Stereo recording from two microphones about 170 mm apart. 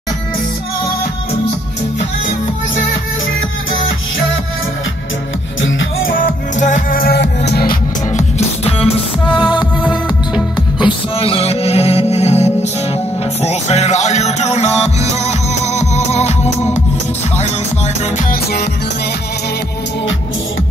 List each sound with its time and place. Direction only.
5.6 s music: 90° left
6.1 s music: 50° left (ahead or behind); by 7.7 s 75° left (ahead or behind)
8.2 s music: 40° left (ahead or behind)
9.6 s music: 5° right (ahead or behind)
10.9 s music: 35° left (ahead or behind)
18.1 s music: 65° left (ahead or behind)